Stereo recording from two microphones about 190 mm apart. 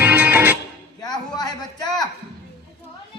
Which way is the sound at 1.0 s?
20° left (ahead or behind).